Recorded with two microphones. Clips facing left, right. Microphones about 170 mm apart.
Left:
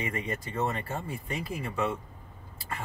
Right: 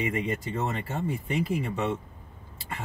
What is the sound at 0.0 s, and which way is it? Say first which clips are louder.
Speech: right 5 dB; 20° right (ahead or behind).